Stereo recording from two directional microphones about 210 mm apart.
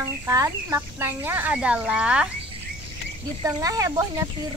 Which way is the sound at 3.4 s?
15° right (ahead or behind).